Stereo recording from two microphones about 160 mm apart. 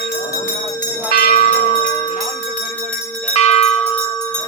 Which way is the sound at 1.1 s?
70° left (ahead or behind).